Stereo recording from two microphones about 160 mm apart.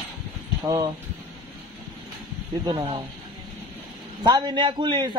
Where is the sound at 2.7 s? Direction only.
30° right (ahead or behind).